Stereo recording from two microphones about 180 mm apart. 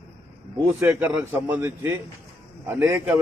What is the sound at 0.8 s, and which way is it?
A man's voice, 10° right (ahead or behind).